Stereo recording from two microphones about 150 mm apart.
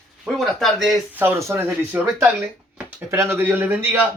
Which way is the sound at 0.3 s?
Centre (ahead or behind).